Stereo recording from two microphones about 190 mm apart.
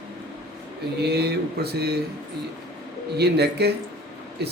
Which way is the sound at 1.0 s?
60° right (ahead or behind).